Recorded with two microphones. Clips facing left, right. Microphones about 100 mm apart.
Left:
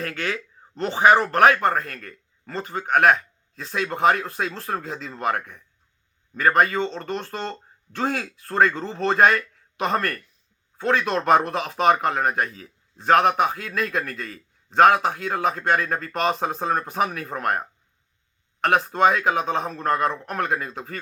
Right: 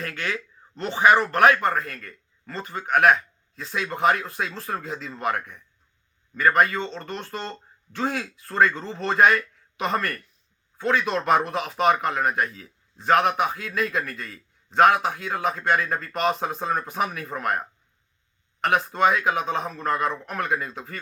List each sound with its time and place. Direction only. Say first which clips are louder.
0.0 s speech: left 2 dB; 35° left (ahead or behind)
1.6 s speech: left 2 dB; 45° left (ahead or behind)
3.1 s a sound: even; 45° left (ahead or behind)
4.0 s speech: left 2 dB; 50° left (ahead or behind)
7.9 s speech: left 1 dB; 50° left (ahead or behind)
19.0 s speech: left 2 dB; 45° left (ahead or behind)